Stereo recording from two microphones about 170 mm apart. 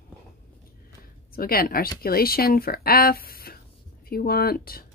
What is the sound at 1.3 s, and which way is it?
Speech, 60° left (ahead or behind).